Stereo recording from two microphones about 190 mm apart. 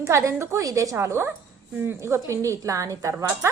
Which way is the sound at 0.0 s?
15° right (ahead or behind).